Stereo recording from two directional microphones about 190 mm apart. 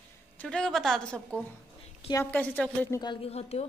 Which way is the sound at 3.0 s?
30° left (ahead or behind).